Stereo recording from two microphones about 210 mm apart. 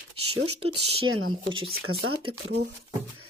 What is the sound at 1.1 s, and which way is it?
Speech, 75° right (ahead or behind).